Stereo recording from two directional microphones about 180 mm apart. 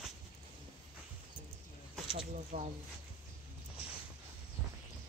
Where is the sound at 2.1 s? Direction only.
35° right (ahead or behind).